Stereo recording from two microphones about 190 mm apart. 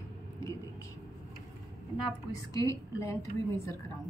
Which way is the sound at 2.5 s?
15° left (ahead or behind).